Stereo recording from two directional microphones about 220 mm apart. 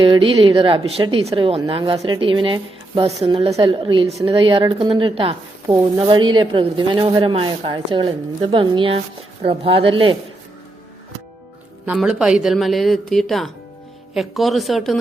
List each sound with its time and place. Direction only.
0.0 s speech: 25° right (ahead or behind)
11.9 s speech: centre (ahead or behind)